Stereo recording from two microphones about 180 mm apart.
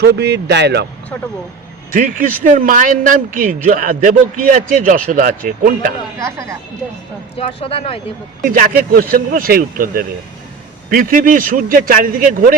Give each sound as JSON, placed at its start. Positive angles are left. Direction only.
{"t": 0.0, "sound": "speech", "side_deg": -65}
{"t": 1.9, "sound": "a man's voice", "side_deg": -45}
{"t": 6.1, "sound": "speech", "side_deg": -15}
{"t": 7.3, "sound": "speech", "side_deg": 35}
{"t": 8.4, "sound": "a man's voice", "side_deg": -50}